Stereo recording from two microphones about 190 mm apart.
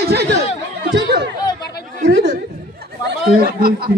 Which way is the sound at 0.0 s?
60° right (ahead or behind).